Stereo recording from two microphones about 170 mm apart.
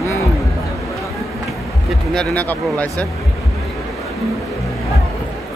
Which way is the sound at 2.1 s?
5° left (ahead or behind).